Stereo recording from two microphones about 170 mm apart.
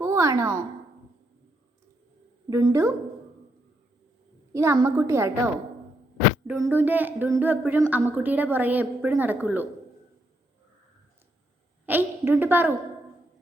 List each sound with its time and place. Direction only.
0.0 s a woman's voice: 15° right (ahead or behind)
2.5 s speech: 15° right (ahead or behind)
4.5 s speech: 15° right (ahead or behind)
6.5 s speech: 10° right (ahead or behind)
11.9 s a woman's voice: 10° right (ahead or behind)